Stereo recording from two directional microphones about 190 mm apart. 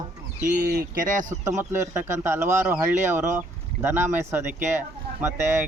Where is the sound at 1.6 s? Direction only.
10° right (ahead or behind).